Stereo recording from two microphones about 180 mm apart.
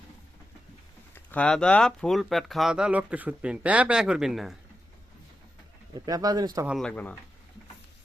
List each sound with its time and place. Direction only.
1.1 s speech: 10° left (ahead or behind)
6.1 s speech: 20° right (ahead or behind)
6.7 s speech: 5° left (ahead or behind)